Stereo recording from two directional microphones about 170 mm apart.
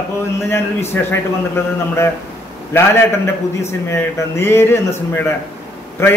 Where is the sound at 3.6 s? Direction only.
15° left (ahead or behind).